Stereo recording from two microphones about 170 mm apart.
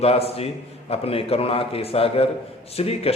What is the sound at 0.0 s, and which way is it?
A man's voice, 35° left (ahead or behind).